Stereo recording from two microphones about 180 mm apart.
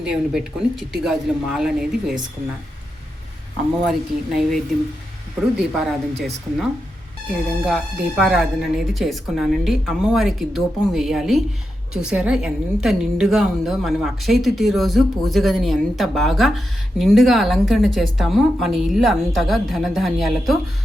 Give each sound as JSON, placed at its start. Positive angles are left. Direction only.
{"t": 0.0, "sound": "a woman's voice", "side_deg": -5}
{"t": 3.8, "sound": "a woman's voice", "side_deg": 0}
{"t": 5.8, "sound": "a woman's voice", "side_deg": 0}